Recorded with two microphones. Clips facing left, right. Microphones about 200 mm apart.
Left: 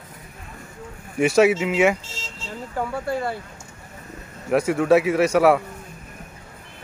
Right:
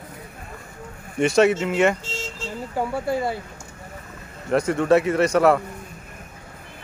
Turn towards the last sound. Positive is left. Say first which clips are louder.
# left 1 dB
turn(degrees=5)  # may be behind; listen again after turning